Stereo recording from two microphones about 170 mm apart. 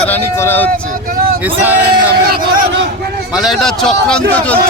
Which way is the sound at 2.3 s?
65° right (ahead or behind).